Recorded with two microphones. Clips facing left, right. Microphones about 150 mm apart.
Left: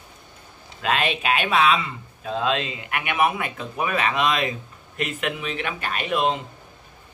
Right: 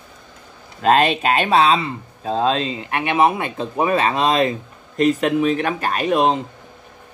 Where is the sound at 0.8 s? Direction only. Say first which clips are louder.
Right 8 dB; 40° right (ahead or behind).